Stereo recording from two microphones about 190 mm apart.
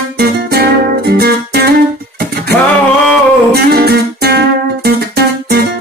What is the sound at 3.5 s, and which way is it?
Music, 55° right (ahead or behind).